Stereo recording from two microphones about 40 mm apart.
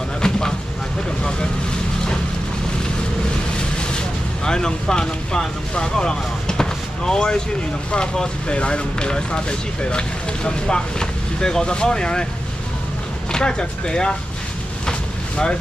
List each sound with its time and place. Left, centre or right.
0.2 s vehicle: centre
4.5 s speech: centre
13.3 s speech: left
14.9 s vehicle: left